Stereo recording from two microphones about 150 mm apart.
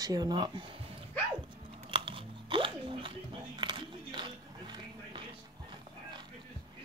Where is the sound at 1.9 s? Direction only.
35° right (ahead or behind).